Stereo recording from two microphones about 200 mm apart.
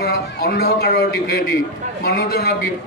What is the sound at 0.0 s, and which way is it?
A man's voice, 50° left (ahead or behind).